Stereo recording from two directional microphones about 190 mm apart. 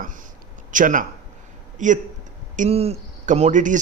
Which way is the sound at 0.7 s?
45° right (ahead or behind).